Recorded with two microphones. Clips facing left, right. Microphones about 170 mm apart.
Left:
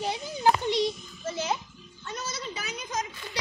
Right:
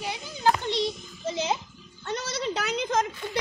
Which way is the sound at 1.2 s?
20° right (ahead or behind).